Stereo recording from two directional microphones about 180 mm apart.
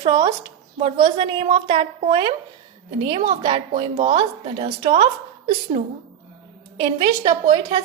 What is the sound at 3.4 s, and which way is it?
A woman's voice, 35° right (ahead or behind).